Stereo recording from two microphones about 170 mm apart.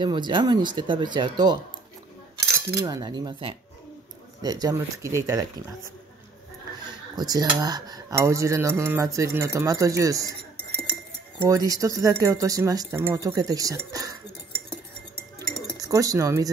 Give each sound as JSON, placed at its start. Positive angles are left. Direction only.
{"t": 0.0, "sound": "speech", "side_deg": -25}
{"t": 2.8, "sound": "speech", "side_deg": -25}
{"t": 6.9, "sound": "speech", "side_deg": -25}
{"t": 11.4, "sound": "speech", "side_deg": -20}
{"t": 15.3, "sound": "chink", "side_deg": -20}